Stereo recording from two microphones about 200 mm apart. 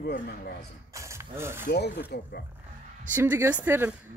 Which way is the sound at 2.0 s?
55° left (ahead or behind).